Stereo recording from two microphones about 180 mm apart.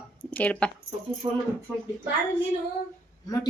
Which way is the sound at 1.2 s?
25° right (ahead or behind).